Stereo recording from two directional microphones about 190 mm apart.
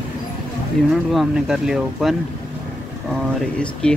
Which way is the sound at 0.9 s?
Centre (ahead or behind).